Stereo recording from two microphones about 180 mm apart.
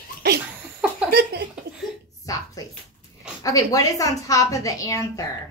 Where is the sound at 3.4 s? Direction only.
20° left (ahead or behind).